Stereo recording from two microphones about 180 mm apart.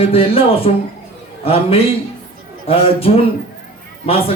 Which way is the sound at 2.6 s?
35° left (ahead or behind).